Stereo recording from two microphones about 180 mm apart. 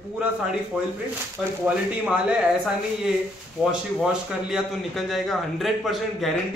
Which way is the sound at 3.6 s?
5° right (ahead or behind).